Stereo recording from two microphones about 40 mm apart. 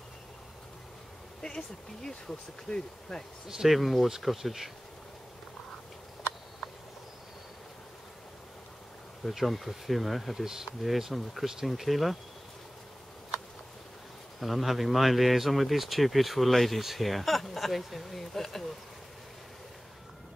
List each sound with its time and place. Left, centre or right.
1.4 s speech: centre
3.4 s speech: centre
9.2 s speech: centre
14.4 s speech: centre